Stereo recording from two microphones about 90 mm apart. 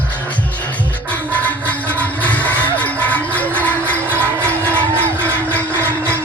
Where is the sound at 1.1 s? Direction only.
15° left (ahead or behind).